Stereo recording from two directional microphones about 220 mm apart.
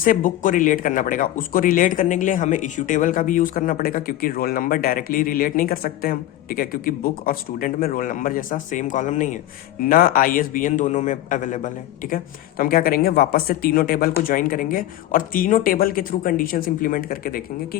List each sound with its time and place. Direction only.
0.0 s speech: 40° left (ahead or behind)